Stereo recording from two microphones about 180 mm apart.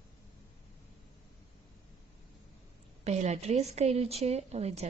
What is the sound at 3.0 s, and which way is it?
A woman's voice, 40° right (ahead or behind).